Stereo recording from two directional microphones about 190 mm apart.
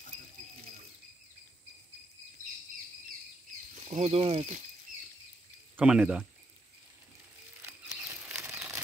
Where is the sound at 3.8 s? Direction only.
35° right (ahead or behind).